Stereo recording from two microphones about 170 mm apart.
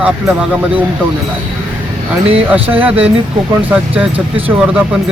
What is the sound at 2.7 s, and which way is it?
Speech, 10° right (ahead or behind).